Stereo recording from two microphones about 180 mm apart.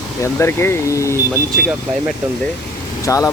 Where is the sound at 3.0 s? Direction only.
20° left (ahead or behind).